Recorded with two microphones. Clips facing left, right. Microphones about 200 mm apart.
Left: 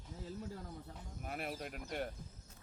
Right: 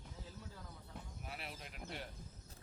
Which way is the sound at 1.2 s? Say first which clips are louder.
Left 10 dB; 50° left (ahead or behind).